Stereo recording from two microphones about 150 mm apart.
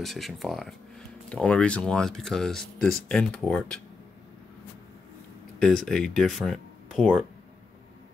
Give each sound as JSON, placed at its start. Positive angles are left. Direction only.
{"t": 0.0, "sound": "speech", "side_deg": 0}
{"t": 5.6, "sound": "speech", "side_deg": 5}